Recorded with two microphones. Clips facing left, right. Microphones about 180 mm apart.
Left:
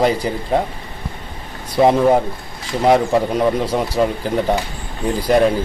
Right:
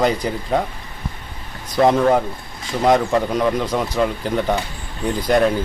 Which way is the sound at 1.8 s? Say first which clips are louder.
Left 2 dB; 10° left (ahead or behind).